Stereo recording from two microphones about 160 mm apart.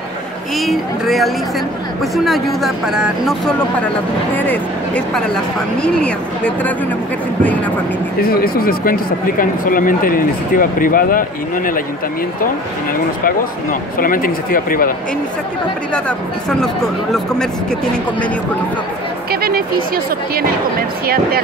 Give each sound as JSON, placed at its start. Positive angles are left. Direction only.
{"t": 0.6, "sound": "speech", "side_deg": 0}
{"t": 4.4, "sound": "speech", "side_deg": 10}
{"t": 8.2, "sound": "speech", "side_deg": 70}
{"t": 13.2, "sound": "speech", "side_deg": 60}
{"t": 15.9, "sound": "speech", "side_deg": 5}